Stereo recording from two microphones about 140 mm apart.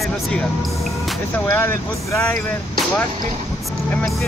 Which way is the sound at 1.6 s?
15° left (ahead or behind).